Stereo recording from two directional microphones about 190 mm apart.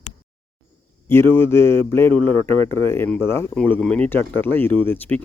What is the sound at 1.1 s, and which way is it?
Speech, 10° left (ahead or behind).